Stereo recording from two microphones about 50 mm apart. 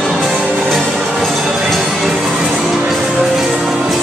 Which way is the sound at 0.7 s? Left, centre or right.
Centre.